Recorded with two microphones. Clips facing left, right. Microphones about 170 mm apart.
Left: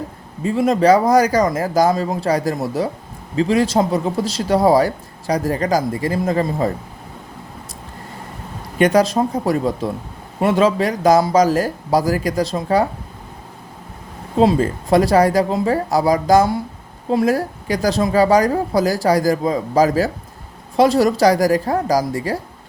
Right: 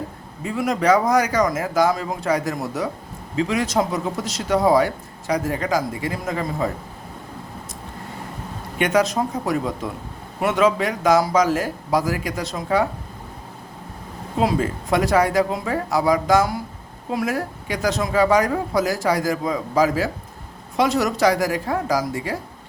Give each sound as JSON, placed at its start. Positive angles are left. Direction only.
{"t": 0.4, "sound": "speech", "side_deg": 30}
{"t": 8.8, "sound": "speech", "side_deg": 35}
{"t": 14.3, "sound": "speech", "side_deg": 30}